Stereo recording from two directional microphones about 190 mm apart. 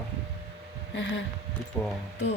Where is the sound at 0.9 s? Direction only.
70° left (ahead or behind).